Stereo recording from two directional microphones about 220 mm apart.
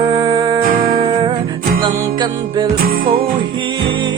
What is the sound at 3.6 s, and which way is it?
Music, 20° right (ahead or behind).